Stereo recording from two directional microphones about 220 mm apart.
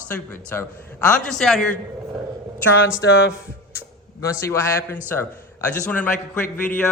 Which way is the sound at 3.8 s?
15° left (ahead or behind).